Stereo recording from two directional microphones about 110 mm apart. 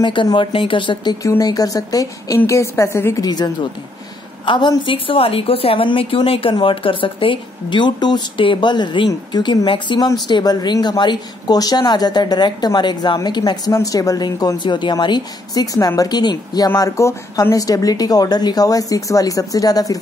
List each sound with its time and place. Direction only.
0.0 s speech: 45° left (ahead or behind)
1.2 s a woman's voice: 30° left (ahead or behind)
3.3 s a woman's voice: 40° left (ahead or behind)